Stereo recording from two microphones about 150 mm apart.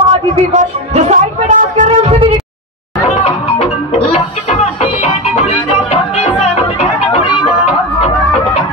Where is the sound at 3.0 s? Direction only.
40° left (ahead or behind).